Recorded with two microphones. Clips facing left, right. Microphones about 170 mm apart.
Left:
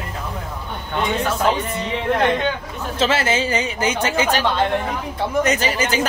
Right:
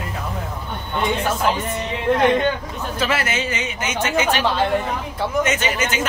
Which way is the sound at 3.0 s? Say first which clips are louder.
Left 4 dB; 25° left (ahead or behind).